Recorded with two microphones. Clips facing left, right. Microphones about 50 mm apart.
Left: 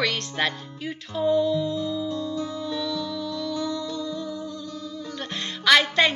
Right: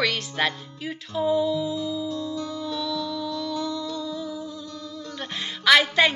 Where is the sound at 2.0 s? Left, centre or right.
Centre.